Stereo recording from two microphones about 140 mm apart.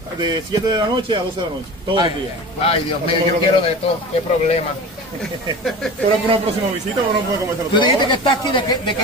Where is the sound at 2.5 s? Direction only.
45° left (ahead or behind).